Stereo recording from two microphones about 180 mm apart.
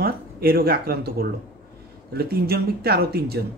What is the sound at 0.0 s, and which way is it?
Speech, 60° right (ahead or behind).